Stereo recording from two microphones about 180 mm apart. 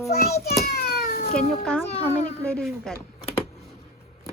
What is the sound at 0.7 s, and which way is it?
Cat, 55° left (ahead or behind).